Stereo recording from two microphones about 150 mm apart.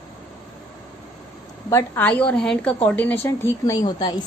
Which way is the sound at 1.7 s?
15° left (ahead or behind).